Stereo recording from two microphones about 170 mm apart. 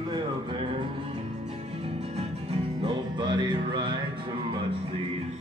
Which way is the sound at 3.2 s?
25° right (ahead or behind).